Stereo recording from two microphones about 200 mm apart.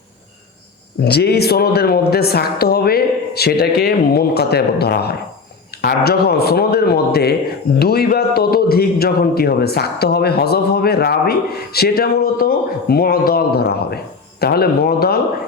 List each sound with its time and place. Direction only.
1.0 s a man's voice: 55° left (ahead or behind)